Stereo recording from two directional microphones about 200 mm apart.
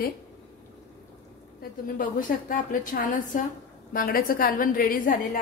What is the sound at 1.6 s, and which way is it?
A woman's voice, 45° left (ahead or behind).